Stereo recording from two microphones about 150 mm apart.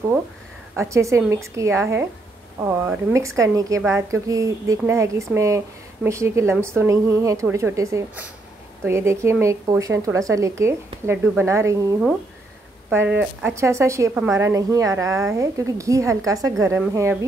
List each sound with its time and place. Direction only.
0.7 s a woman's voice: 20° right (ahead or behind)
12.9 s a woman's voice: 10° right (ahead or behind)